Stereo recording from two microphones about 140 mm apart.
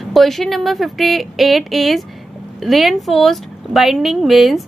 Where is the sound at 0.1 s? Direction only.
Centre (ahead or behind).